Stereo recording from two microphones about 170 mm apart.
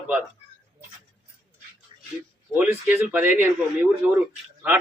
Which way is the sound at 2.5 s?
15° right (ahead or behind).